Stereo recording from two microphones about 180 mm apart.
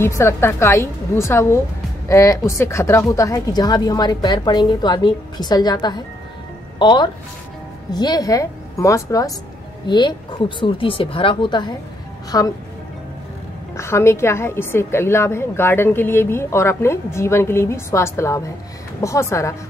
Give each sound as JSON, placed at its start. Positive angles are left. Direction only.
{"t": 0.0, "sound": "a woman's voice", "side_deg": 15}
{"t": 13.7, "sound": "a woman's voice", "side_deg": 15}